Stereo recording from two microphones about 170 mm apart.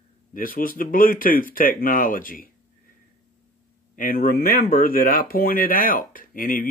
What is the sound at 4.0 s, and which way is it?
Speech, 55° left (ahead or behind).